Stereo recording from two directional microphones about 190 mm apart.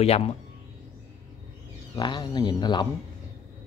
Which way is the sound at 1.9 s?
25° left (ahead or behind).